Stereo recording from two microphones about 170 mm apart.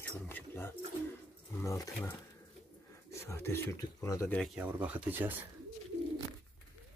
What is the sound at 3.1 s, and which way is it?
Speech, 15° left (ahead or behind).